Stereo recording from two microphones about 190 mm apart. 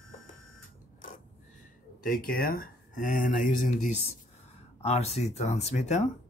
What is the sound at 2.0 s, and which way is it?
Speech, 50° left (ahead or behind).